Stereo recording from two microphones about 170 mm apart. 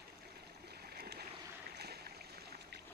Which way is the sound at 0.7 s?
70° right (ahead or behind).